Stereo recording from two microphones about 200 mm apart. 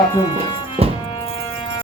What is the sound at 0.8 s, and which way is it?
Music, 30° right (ahead or behind).